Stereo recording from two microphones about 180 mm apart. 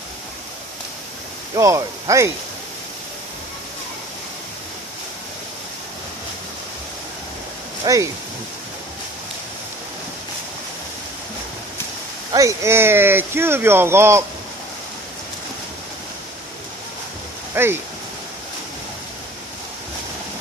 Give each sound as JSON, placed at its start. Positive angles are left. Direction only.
{"t": 1.5, "sound": "speech", "side_deg": -20}
{"t": 7.8, "sound": "speech", "side_deg": -20}
{"t": 12.3, "sound": "speech", "side_deg": -15}
{"t": 17.6, "sound": "speech", "side_deg": -15}